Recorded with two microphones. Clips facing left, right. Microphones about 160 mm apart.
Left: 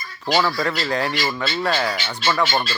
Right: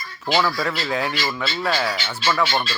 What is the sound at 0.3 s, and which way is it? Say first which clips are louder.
Speech: left 1 dB; centre (ahead or behind).